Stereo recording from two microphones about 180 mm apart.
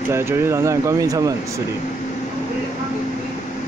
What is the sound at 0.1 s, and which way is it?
Speech, 15° right (ahead or behind).